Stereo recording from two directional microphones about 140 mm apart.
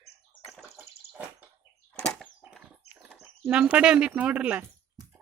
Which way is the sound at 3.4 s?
10° right (ahead or behind).